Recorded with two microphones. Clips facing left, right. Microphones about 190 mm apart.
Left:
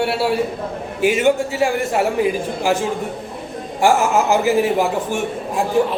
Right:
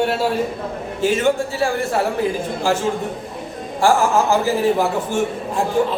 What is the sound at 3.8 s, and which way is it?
Speech, 20° left (ahead or behind).